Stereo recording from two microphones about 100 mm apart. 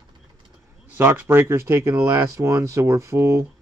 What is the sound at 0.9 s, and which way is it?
Speech, 20° right (ahead or behind).